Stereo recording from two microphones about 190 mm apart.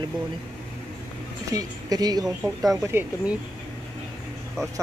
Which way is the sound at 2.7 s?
15° right (ahead or behind).